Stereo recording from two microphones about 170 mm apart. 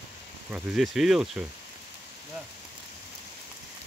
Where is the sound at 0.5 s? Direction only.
Centre (ahead or behind).